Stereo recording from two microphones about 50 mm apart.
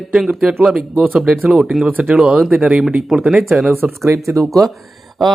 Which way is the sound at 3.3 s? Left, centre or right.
Centre.